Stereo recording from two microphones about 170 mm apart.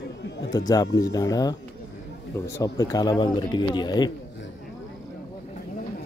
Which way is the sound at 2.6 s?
20° left (ahead or behind).